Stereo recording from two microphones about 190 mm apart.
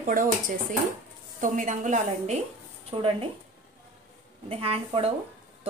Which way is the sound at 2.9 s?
25° right (ahead or behind).